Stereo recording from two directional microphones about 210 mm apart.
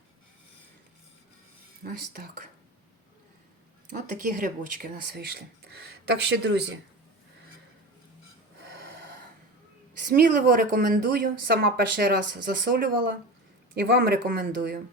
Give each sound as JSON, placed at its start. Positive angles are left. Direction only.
{"t": 1.8, "sound": "speech", "side_deg": -45}
{"t": 3.9, "sound": "speech", "side_deg": -40}
{"t": 8.8, "sound": "snort", "side_deg": -45}
{"t": 10.2, "sound": "speech", "side_deg": -45}